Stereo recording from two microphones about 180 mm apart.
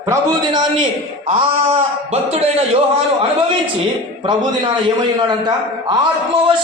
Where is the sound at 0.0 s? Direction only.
20° right (ahead or behind); by 2.6 s 35° right (ahead or behind).